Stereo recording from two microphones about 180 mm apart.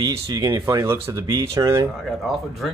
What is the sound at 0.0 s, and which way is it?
Speech, 20° right (ahead or behind).